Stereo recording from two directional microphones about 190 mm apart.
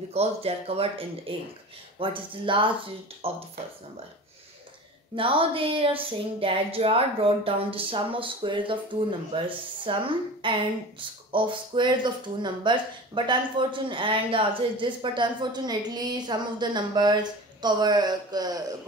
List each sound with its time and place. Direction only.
0.1 s speech: 30° right (ahead or behind)
5.1 s speech: 30° right (ahead or behind)